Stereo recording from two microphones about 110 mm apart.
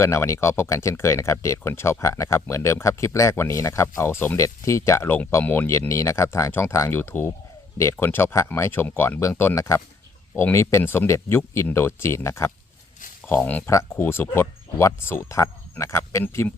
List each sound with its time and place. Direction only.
0.0 s speech: 25° left (ahead or behind)